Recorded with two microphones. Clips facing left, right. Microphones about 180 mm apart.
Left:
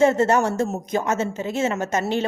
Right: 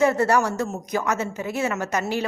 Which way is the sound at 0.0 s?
25° left (ahead or behind).